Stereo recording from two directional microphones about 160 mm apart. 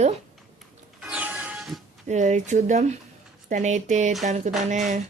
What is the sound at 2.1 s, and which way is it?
A woman's voice, 45° right (ahead or behind).